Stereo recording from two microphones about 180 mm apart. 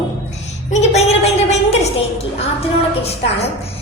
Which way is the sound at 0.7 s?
40° left (ahead or behind).